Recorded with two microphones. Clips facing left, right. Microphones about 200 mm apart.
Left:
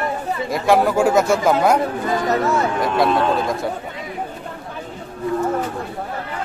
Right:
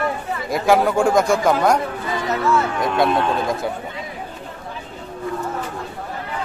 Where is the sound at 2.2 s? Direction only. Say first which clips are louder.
Even; 40° left (ahead or behind).